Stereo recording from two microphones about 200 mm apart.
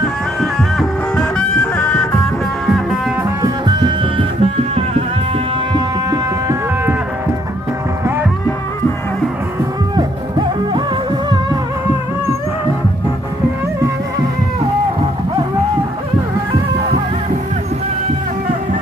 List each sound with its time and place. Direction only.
0.3 s music: 5° left (ahead or behind)
3.4 s music: 20° right (ahead or behind)
9.9 s music: 20° right (ahead or behind)